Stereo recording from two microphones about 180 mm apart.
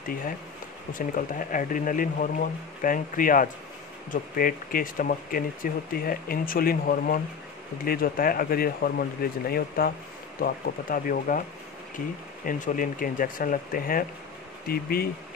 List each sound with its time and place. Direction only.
0.9 s speech: 45° left (ahead or behind)
12.4 s speech: 45° left (ahead or behind)